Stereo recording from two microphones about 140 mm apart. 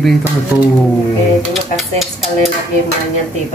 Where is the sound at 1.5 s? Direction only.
Centre (ahead or behind).